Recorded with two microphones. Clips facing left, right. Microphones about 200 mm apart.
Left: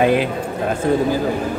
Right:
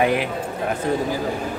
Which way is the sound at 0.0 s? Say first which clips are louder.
Left 4 dB; 25° left (ahead or behind).